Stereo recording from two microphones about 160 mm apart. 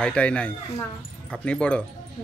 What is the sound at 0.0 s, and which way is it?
Speech, 5° left (ahead or behind).